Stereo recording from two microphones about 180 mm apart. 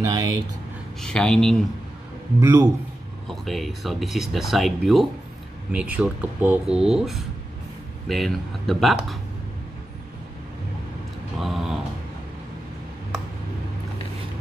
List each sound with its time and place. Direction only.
0.0 s speech: 20° right (ahead or behind)
1.0 s speech: 5° left (ahead or behind)
2.4 s a man's voice: 20° right (ahead or behind)
3.3 s speech: centre (ahead or behind)
11.3 s a sound: centre (ahead or behind)